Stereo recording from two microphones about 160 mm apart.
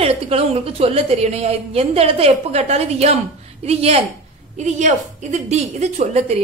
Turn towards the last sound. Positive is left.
turn(degrees=-45)  # may be behind; listen again after turning